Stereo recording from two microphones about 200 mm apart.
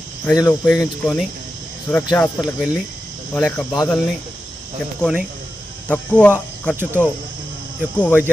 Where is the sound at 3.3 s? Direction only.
5° left (ahead or behind).